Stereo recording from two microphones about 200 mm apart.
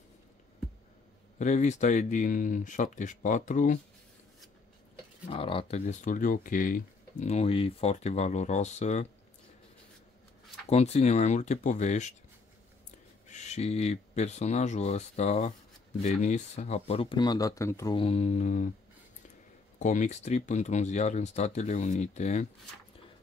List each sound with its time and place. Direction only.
1.4 s speech: 35° left (ahead or behind)
5.2 s speech: 25° left (ahead or behind)
10.7 s speech: 30° left (ahead or behind)
13.3 s speech: 35° left (ahead or behind); by 17.9 s 15° left (ahead or behind)
17.9 s speech: 30° left (ahead or behind)
19.8 s speech: 40° left (ahead or behind)